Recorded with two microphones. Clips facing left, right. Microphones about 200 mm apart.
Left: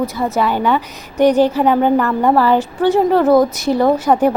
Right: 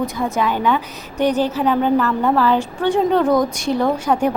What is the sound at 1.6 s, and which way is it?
Speech, 55° left (ahead or behind).